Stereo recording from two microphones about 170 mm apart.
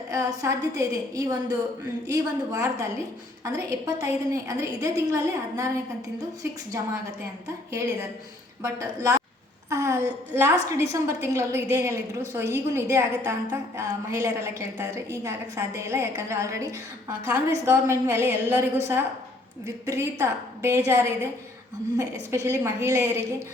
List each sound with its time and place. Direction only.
0.1 s a woman's voice: 20° right (ahead or behind)
8.6 s a woman's voice: 20° right (ahead or behind)
19.6 s a woman's voice: 15° right (ahead or behind)